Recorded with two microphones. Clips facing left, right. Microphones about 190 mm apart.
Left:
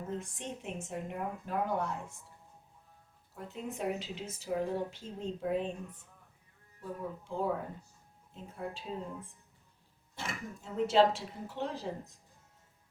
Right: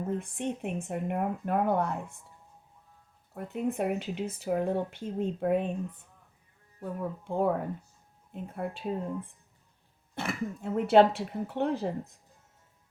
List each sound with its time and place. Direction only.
0.1 s speech: 60° right (ahead or behind)
3.3 s speech: 60° right (ahead or behind)
6.8 s speech: 60° right (ahead or behind)
10.2 s speech: 60° right (ahead or behind)